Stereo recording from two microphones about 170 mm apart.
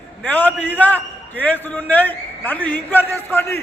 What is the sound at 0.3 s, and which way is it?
A man's voice, 10° left (ahead or behind).